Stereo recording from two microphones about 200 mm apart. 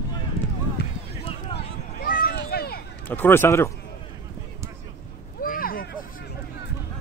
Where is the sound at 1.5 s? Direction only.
50° left (ahead or behind).